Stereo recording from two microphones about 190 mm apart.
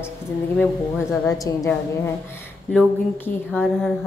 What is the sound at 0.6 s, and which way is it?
Speech, 5° left (ahead or behind).